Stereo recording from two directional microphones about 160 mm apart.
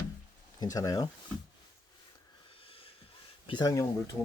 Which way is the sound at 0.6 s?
20° left (ahead or behind).